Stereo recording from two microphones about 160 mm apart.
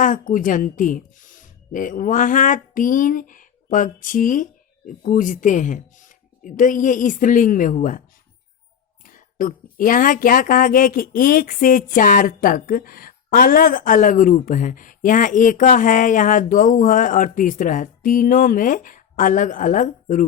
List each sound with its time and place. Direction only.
0.0 s speech: 55° left (ahead or behind)
9.0 s speech: 55° left (ahead or behind)